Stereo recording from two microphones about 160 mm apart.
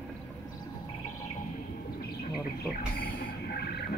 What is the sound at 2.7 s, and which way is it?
Music, 70° left (ahead or behind).